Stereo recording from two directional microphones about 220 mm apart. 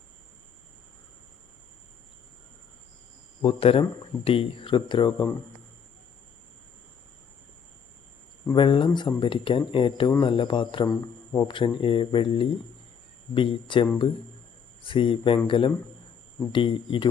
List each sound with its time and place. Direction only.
3.4 s speech: 25° left (ahead or behind)
8.5 s speech: 20° left (ahead or behind)
14.8 s speech: 25° left (ahead or behind)